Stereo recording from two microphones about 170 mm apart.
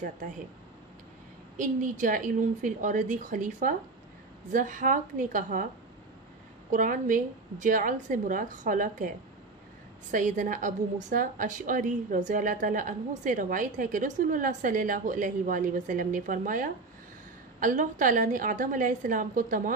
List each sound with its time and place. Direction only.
1.6 s a woman's voice: 50° right (ahead or behind)
6.7 s a woman's voice: 50° right (ahead or behind)
10.1 s a woman's voice: 50° right (ahead or behind)